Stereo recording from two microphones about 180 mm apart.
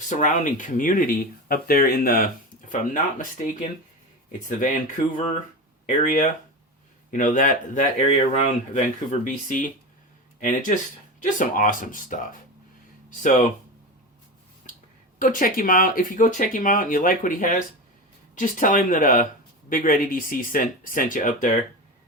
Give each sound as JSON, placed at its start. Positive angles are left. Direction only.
{"t": 0.0, "sound": "speech", "side_deg": 45}
{"t": 14.7, "sound": "a sound", "side_deg": 45}
{"t": 15.2, "sound": "speech", "side_deg": 50}